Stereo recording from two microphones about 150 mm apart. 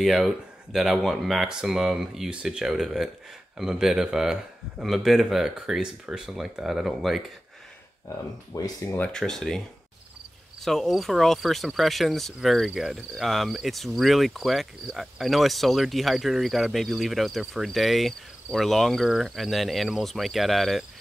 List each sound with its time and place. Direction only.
0.0 s speech: centre (ahead or behind)
8.5 s speech: 25° left (ahead or behind)
8.9 s speech: 5° left (ahead or behind)
10.6 s speech: centre (ahead or behind)